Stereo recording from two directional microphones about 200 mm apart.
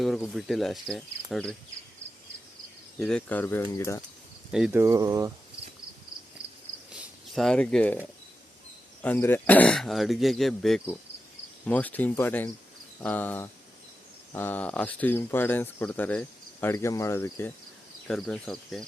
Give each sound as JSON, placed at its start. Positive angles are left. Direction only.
{"t": 0.0, "sound": "speech", "side_deg": 0}
{"t": 3.0, "sound": "speech", "side_deg": 5}
{"t": 4.5, "sound": "speech", "side_deg": -5}
{"t": 6.9, "sound": "a sound", "side_deg": 0}
{"t": 9.0, "sound": "speech", "side_deg": 10}
{"t": 18.1, "sound": "speech", "side_deg": 0}